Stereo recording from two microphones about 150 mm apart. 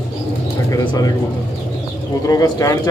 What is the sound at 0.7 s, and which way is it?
Speech, 30° left (ahead or behind).